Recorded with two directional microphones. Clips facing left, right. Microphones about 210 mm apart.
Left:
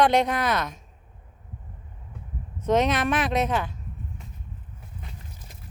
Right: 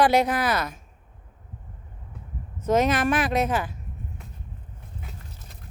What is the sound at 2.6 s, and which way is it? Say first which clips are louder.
Speech: right 1 dB; centre (ahead or behind).